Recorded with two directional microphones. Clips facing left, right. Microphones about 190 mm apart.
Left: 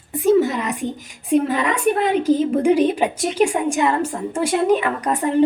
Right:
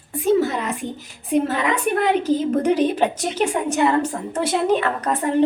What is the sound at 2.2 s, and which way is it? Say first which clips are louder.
A woman's voice: left 2 dB; 10° left (ahead or behind).